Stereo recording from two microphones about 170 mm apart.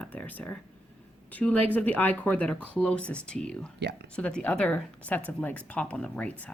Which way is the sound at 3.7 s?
80° right.